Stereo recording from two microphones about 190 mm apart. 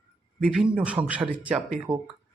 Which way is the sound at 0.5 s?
5° right (ahead or behind).